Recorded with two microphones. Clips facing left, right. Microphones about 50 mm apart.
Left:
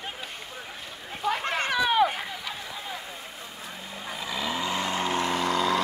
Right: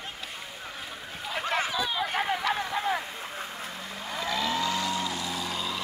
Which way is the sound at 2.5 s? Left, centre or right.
Right.